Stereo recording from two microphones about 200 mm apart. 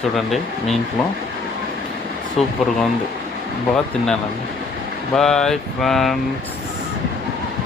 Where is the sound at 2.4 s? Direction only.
Centre (ahead or behind).